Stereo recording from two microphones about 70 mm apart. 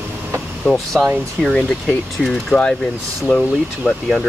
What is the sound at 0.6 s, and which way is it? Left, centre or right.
Speech, centre.